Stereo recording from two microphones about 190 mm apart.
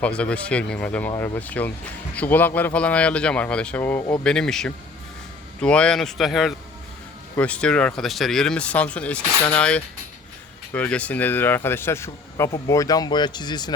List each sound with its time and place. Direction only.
0.0 s speech: 5° left (ahead or behind); by 13.7 s 20° left (ahead or behind)